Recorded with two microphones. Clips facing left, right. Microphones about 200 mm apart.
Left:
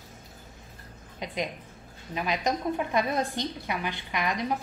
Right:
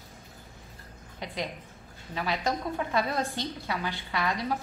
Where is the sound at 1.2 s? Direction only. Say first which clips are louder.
Left 2 dB; 20° left (ahead or behind).